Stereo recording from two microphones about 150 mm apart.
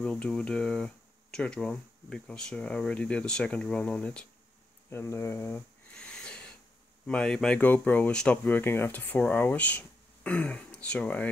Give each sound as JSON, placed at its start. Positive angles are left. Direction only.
{"t": 0.0, "sound": "speech", "side_deg": 10}
{"t": 5.9, "sound": "a sound", "side_deg": 5}
{"t": 7.1, "sound": "speech", "side_deg": 5}